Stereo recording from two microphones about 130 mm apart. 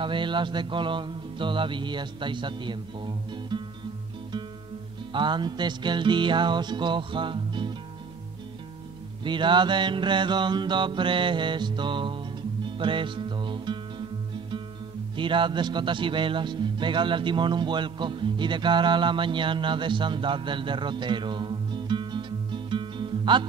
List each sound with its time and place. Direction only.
0.0 s music: 40° right (ahead or behind)
5.1 s music: 35° right (ahead or behind)
9.2 s music: 40° right (ahead or behind)
15.1 s a man's voice: 40° right (ahead or behind)